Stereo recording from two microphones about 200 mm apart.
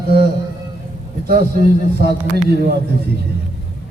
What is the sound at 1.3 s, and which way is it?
Speech, 50° right (ahead or behind).